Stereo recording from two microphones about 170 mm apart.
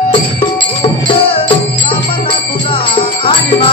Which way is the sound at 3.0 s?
35° left (ahead or behind).